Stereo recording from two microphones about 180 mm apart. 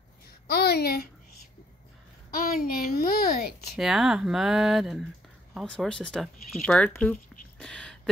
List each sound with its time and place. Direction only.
0.5 s a child's voice: 60° left (ahead or behind)
2.3 s a woman's voice: 55° left (ahead or behind)
3.7 s speech: centre (ahead or behind)
7.5 s a sound: 5° left (ahead or behind)